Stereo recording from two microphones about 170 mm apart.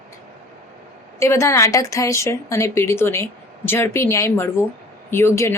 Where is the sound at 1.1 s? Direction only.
15° left (ahead or behind).